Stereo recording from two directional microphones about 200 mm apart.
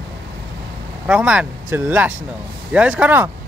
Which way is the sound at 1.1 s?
5° right (ahead or behind).